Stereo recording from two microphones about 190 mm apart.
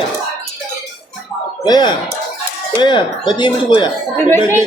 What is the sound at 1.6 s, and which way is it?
Speech, 20° left (ahead or behind).